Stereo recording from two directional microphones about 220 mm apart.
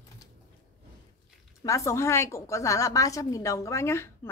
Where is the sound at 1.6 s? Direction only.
15° left (ahead or behind).